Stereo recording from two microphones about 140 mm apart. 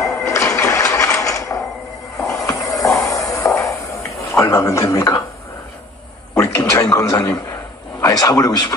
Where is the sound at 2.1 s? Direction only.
20° left (ahead or behind).